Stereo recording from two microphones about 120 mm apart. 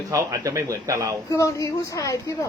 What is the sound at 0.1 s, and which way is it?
Speech, 25° right (ahead or behind).